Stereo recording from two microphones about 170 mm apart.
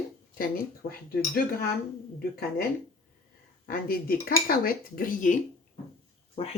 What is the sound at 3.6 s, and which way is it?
Speech, 60° left (ahead or behind).